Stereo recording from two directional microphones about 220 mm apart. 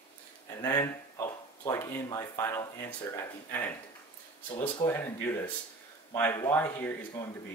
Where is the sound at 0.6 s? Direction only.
15° left (ahead or behind).